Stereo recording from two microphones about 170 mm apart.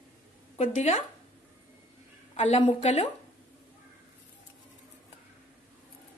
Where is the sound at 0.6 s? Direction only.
45° left (ahead or behind).